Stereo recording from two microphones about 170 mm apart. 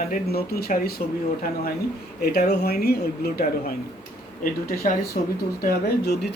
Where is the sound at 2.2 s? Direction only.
70° left (ahead or behind).